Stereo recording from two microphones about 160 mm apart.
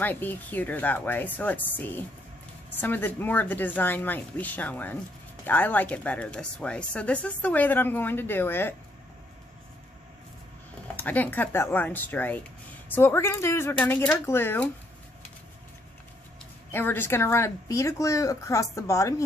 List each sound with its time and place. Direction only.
0.0 s speech: 10° left (ahead or behind)
11.0 s speech: 10° left (ahead or behind)
16.7 s a woman's voice: 15° left (ahead or behind)